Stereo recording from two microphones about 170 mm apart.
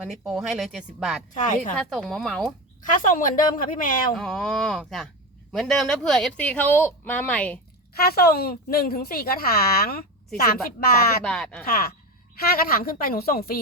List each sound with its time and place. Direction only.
0.1 s speech: centre (ahead or behind)
1.3 s a woman's voice: 45° left (ahead or behind)
1.9 s speech: centre (ahead or behind)
2.8 s a woman's voice: 50° left (ahead or behind)
4.1 s speech: 5° left (ahead or behind)
7.9 s speech: 65° left (ahead or behind)
11.2 s speech: 5° left (ahead or behind)
11.6 s speech: 60° left (ahead or behind)